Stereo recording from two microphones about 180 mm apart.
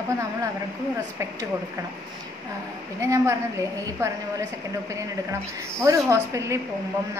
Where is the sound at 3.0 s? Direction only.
15° right (ahead or behind).